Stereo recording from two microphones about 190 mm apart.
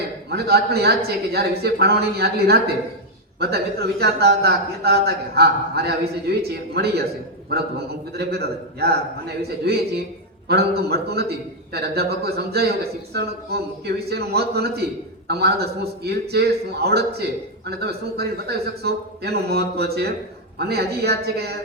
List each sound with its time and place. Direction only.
0.3 s a man's voice: 60° right (ahead or behind)